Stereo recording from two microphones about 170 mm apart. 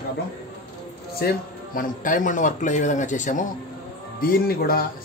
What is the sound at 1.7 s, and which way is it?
Speech, 50° left (ahead or behind).